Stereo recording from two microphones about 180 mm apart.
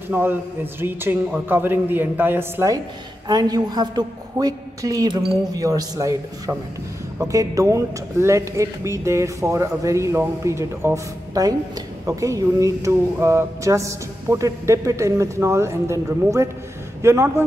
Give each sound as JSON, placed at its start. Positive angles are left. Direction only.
{"t": 0.1, "sound": "a woman's voice", "side_deg": -10}